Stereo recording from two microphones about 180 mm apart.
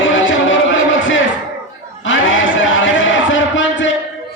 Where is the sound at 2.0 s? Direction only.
90° left.